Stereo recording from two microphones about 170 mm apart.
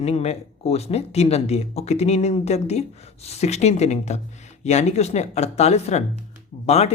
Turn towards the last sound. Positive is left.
turn(degrees=40)  # may be behind; listen again after turning